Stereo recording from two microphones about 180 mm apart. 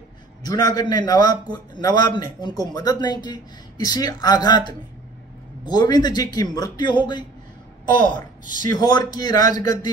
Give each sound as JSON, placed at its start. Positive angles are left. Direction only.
{"t": 0.5, "sound": "a man's voice", "side_deg": 20}